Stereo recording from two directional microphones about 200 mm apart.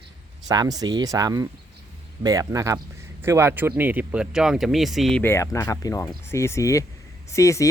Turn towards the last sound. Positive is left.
turn(degrees=15)  # may be behind; listen again after turning